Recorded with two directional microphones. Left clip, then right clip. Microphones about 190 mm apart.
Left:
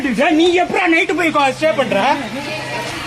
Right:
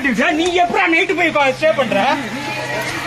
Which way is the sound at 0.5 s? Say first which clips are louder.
Even; 35° left (ahead or behind).